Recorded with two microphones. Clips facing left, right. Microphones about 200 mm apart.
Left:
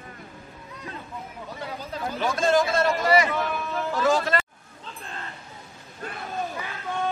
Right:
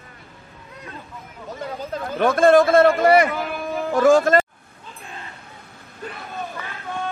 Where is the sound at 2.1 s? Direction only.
55° right (ahead or behind).